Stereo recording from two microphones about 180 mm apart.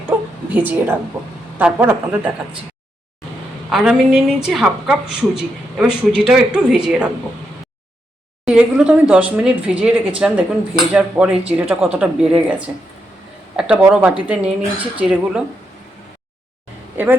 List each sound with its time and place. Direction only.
0.1 s a sound: 10° right (ahead or behind)
1.2 s a woman's voice: 15° right (ahead or behind)
3.7 s a woman's voice: centre (ahead or behind)
8.4 s a woman's voice: 5° right (ahead or behind)